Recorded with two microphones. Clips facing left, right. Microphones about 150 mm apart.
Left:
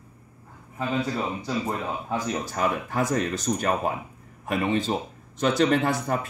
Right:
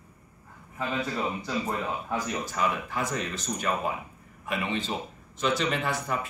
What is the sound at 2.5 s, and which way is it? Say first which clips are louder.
Speech: left 2 dB; 45° left (ahead or behind).